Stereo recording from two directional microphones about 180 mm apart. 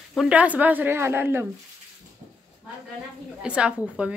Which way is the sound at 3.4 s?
5° right (ahead or behind).